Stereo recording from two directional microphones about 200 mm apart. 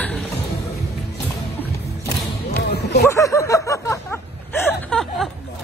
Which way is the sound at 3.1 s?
15° left (ahead or behind).